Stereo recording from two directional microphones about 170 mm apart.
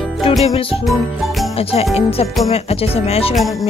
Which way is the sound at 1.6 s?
35° left (ahead or behind).